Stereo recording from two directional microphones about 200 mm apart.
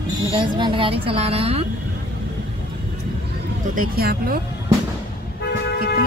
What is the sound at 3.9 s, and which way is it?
Speech, 50° right (ahead or behind).